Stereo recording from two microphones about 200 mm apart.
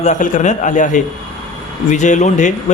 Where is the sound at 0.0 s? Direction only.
40° left (ahead or behind).